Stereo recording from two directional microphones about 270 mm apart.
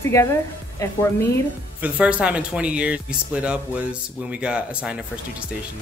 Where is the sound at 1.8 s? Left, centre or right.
Centre.